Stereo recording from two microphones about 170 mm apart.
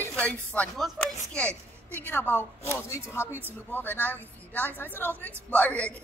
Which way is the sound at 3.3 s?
10° right (ahead or behind).